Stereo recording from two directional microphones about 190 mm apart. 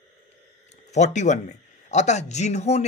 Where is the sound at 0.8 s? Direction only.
40° left (ahead or behind).